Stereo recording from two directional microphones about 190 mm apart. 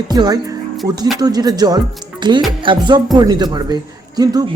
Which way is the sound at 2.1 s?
25° right (ahead or behind).